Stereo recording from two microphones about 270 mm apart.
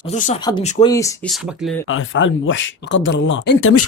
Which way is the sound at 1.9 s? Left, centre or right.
Left.